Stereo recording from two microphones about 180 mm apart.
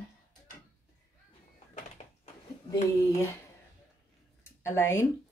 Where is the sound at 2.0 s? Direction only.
40° left (ahead or behind).